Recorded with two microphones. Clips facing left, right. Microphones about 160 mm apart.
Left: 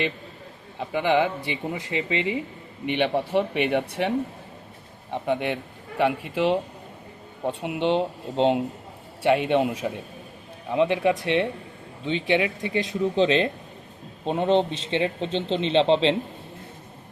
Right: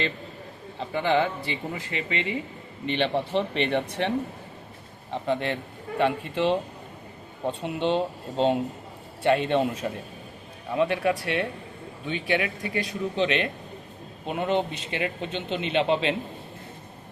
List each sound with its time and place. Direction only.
0.8 s a man's voice: 10° left (ahead or behind)
5.1 s a man's voice: 15° left (ahead or behind)